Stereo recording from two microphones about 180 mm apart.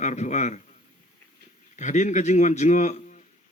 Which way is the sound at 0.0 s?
40° left (ahead or behind).